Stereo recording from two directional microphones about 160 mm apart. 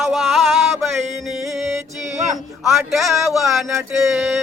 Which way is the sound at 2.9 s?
Centre (ahead or behind).